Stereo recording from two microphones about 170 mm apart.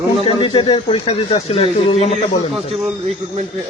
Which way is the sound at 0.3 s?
30° left (ahead or behind).